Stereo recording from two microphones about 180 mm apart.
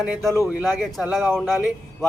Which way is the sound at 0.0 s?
Centre (ahead or behind).